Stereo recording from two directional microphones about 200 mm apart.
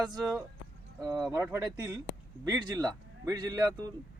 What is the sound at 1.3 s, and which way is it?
A man's voice, 15° right (ahead or behind).